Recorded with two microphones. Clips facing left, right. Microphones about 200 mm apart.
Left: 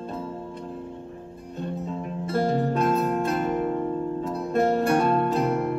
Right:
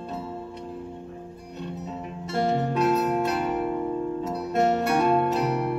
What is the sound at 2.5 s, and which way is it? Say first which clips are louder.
Music: left 1 dB; 40° left (ahead or behind).